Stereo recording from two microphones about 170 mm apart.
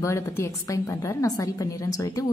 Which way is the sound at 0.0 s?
15° left (ahead or behind).